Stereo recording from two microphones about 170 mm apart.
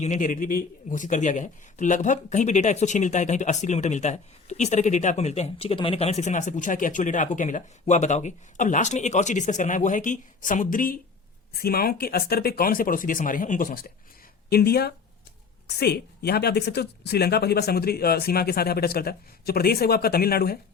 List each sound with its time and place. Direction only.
0.0 s a woman's voice: 45° left (ahead or behind); by 20.6 s 65° left (ahead or behind)